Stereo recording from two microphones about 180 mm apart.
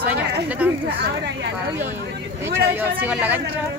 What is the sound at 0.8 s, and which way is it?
Speech, 75° right (ahead or behind).